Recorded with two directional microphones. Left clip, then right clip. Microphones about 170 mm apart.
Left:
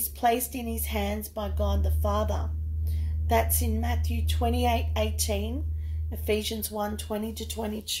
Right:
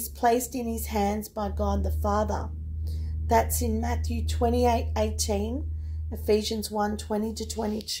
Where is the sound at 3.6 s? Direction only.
20° right (ahead or behind).